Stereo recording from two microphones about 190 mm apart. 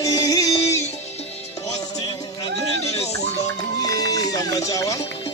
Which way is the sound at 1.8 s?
20° left (ahead or behind).